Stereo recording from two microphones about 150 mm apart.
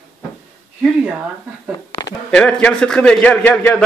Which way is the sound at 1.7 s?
25° left (ahead or behind).